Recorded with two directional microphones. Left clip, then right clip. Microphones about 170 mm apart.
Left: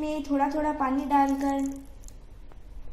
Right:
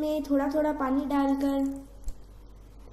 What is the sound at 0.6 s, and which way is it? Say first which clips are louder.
Speech: even; 10° right (ahead or behind).